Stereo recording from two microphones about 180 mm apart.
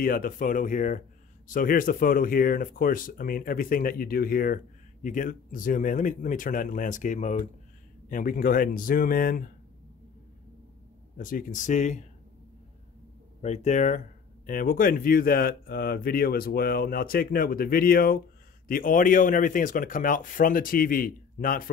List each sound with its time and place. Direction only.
0.0 s speech: 50° left (ahead or behind)
11.1 s speech: 50° left (ahead or behind)
13.4 s speech: 40° left (ahead or behind)